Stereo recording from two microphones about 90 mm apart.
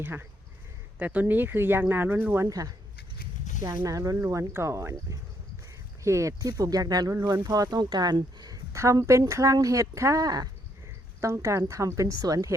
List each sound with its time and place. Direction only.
0.0 s speech: 25° right (ahead or behind)
2.5 s speech: 40° right (ahead or behind)
4.2 s speech: 30° right (ahead or behind); by 8.6 s 50° right (ahead or behind)
8.7 s speech: 35° right (ahead or behind)
11.2 s speech: 35° right (ahead or behind)